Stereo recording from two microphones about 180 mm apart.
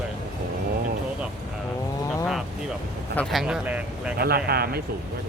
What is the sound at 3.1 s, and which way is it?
Speech, 5° left (ahead or behind).